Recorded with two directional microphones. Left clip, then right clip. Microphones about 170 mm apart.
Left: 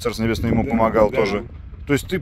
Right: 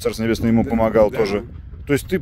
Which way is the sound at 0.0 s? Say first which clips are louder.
Right 2 dB; 60° right (ahead or behind).